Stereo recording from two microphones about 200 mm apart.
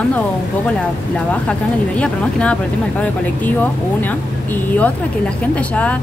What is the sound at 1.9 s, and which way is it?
Speech, 5° left (ahead or behind).